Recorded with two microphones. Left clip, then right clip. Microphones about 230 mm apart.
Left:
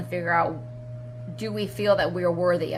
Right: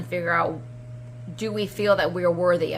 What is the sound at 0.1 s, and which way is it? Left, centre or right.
Speech, centre.